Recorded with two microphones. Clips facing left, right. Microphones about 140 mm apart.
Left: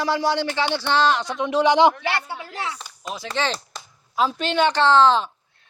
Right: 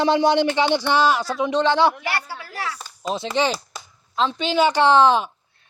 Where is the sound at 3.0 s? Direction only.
30° right (ahead or behind).